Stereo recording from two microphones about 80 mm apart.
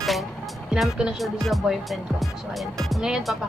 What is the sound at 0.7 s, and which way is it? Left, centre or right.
Speech, centre.